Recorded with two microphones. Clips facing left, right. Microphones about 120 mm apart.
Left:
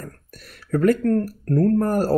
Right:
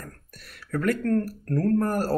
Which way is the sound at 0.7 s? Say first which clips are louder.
Left 7 dB; 30° left (ahead or behind).